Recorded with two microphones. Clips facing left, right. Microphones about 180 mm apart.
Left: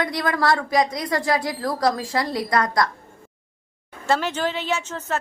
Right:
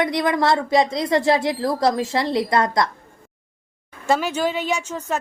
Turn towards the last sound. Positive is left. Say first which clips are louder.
# right 1 dB
turn(degrees=-15)  # may be behind; listen again after turning